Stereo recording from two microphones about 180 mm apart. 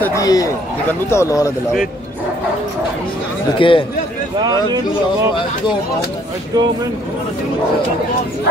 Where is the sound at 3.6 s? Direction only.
30° left (ahead or behind).